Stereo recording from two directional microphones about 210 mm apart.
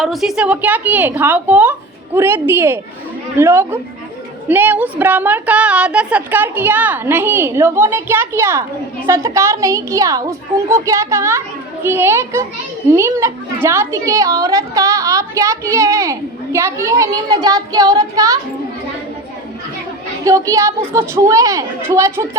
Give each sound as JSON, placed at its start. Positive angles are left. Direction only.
{"t": 0.0, "sound": "a woman's voice", "side_deg": 0}
{"t": 20.2, "sound": "a woman's voice", "side_deg": -15}